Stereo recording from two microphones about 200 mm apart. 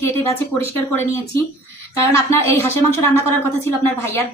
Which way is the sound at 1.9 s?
15° left (ahead or behind).